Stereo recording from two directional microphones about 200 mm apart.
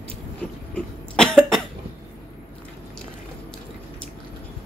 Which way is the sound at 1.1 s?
5° left (ahead or behind).